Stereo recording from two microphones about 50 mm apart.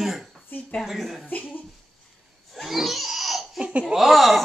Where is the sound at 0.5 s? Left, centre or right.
Left.